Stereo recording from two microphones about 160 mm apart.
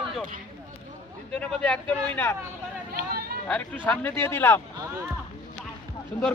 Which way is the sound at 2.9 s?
70° right (ahead or behind).